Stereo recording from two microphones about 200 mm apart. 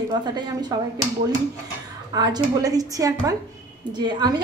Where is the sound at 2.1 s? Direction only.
20° right (ahead or behind).